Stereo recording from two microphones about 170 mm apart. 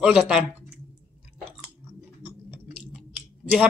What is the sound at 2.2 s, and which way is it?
Chewing, 10° right (ahead or behind).